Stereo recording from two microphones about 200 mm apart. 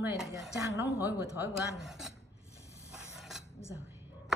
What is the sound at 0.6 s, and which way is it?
Speech, 15° right (ahead or behind).